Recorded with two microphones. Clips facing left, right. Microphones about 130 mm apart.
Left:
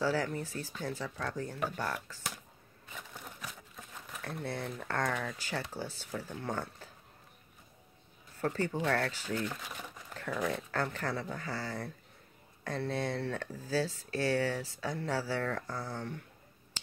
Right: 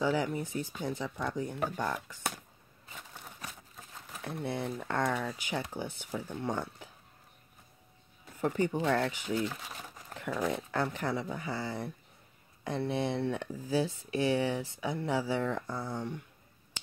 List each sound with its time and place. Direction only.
0.0 s speech: 15° right (ahead or behind)
4.2 s speech: 20° right (ahead or behind)
8.4 s speech: 15° right (ahead or behind)